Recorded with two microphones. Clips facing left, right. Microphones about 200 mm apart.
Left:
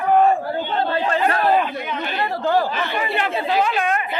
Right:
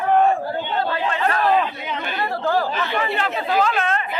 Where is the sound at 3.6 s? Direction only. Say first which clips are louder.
Even; 15° left (ahead or behind).